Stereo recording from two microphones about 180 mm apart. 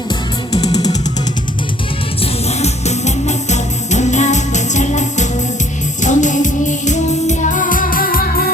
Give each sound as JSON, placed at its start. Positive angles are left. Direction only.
{"t": 0.1, "sound": "music", "side_deg": 20}
{"t": 2.2, "sound": "music", "side_deg": 35}